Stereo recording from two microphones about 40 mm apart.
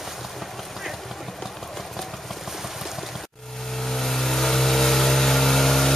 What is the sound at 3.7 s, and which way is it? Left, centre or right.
Vehicle, centre.